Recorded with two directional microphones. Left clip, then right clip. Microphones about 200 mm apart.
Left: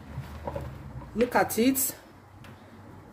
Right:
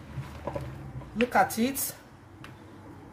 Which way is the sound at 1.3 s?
40° left (ahead or behind).